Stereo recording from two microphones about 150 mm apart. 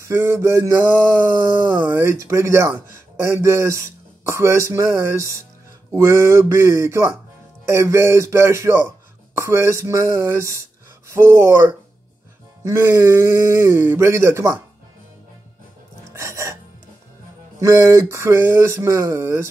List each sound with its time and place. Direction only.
0.0 s speech: 15° right (ahead or behind)
1.9 s speech: 20° right (ahead or behind)
16.2 s music: 20° right (ahead or behind)
17.6 s speech: 20° right (ahead or behind)